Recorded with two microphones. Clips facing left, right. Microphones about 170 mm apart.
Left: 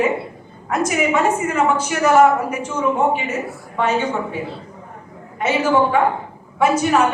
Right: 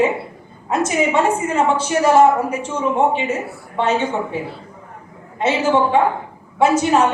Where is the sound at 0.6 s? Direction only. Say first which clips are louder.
Right 1 dB; 25° right (ahead or behind).